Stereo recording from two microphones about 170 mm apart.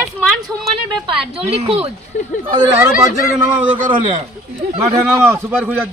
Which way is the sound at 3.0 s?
20° right (ahead or behind).